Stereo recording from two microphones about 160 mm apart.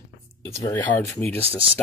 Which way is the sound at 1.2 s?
10° left (ahead or behind).